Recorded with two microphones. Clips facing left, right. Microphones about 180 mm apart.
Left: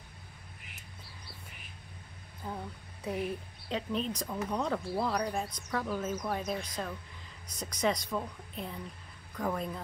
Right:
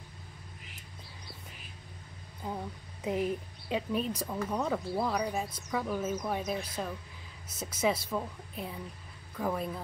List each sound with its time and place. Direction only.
2.4 s speech: 20° right (ahead or behind)